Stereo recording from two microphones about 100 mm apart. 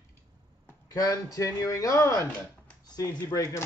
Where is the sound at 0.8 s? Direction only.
35° left (ahead or behind).